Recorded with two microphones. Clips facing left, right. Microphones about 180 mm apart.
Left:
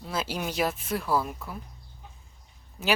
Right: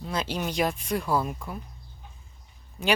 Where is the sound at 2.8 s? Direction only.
5° left (ahead or behind).